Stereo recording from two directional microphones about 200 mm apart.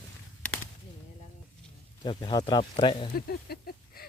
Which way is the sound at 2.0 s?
20° left (ahead or behind).